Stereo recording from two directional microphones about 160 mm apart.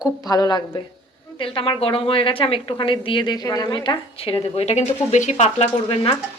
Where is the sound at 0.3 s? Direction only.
25° left (ahead or behind).